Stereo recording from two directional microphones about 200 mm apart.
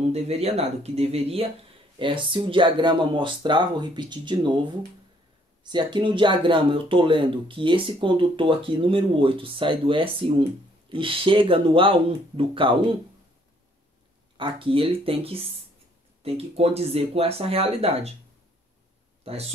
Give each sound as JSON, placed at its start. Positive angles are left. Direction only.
{"t": 0.1, "sound": "speech", "side_deg": -30}
{"t": 14.3, "sound": "speech", "side_deg": -25}
{"t": 19.2, "sound": "speech", "side_deg": -30}